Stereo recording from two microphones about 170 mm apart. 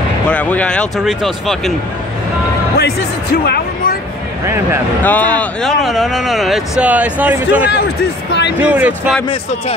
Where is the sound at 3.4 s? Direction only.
65° left (ahead or behind).